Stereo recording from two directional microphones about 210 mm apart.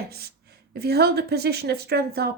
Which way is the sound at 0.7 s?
50° right (ahead or behind).